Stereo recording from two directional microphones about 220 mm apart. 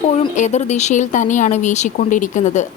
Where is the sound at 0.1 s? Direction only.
30° left (ahead or behind).